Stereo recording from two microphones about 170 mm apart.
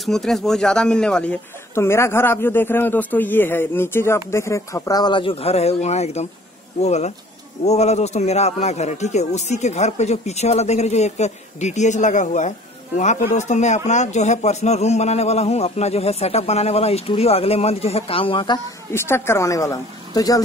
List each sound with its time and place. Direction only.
0.0 s speech: centre (ahead or behind); by 18.6 s 30° left (ahead or behind)
18.9 s speech: 15° left (ahead or behind)